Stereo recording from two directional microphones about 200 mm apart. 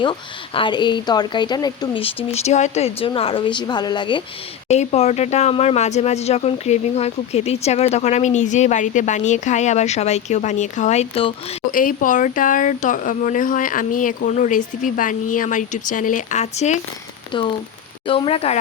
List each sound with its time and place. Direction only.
0.0 s a woman's voice: 25° left (ahead or behind)
4.7 s speech: 35° left (ahead or behind)
11.7 s speech: 45° left (ahead or behind)
17.3 s a woman's voice: 25° left (ahead or behind)